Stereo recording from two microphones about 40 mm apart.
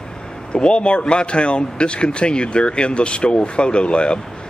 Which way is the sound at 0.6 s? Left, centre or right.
Left.